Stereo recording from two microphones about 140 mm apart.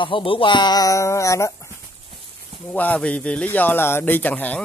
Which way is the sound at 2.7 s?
10° left (ahead or behind).